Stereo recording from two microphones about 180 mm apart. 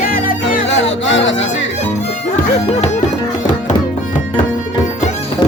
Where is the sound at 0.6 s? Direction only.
90° left.